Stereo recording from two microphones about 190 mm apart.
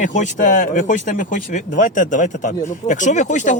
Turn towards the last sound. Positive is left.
turn(degrees=40)  # may be behind; listen again after turning